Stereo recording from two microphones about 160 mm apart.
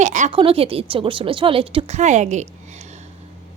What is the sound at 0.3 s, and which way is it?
Speech, 35° right (ahead or behind).